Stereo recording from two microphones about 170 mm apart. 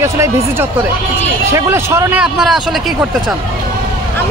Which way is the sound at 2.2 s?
5° right (ahead or behind).